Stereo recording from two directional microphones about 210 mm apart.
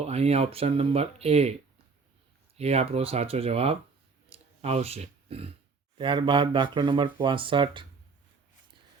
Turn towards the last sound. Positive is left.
turn(degrees=-20)  # may be behind; listen again after turning